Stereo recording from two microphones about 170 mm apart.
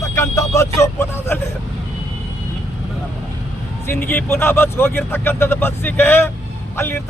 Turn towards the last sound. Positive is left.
turn(degrees=15)  # may be behind; listen again after turning